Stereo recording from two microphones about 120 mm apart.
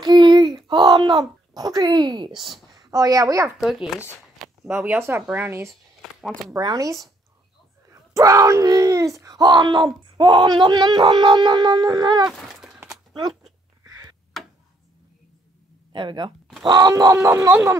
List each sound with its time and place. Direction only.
0.0 s a child's voice: 40° right (ahead or behind)
3.5 s speech: centre (ahead or behind)
4.6 s speech: 15° right (ahead or behind)
6.2 s speech: centre (ahead or behind)
6.6 s speech: 35° right (ahead or behind)
12.3 s a sound: 5° right (ahead or behind)
13.8 s a sound: 30° right (ahead or behind)
14.3 s tick-tock: centre (ahead or behind)
15.9 s speech: 40° right (ahead or behind); by 17.7 s 20° right (ahead or behind)